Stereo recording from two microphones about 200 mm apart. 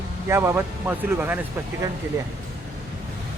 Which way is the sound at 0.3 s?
15° right (ahead or behind).